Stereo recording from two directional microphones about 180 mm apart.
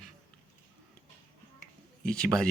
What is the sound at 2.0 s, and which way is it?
Speech, 5° left (ahead or behind).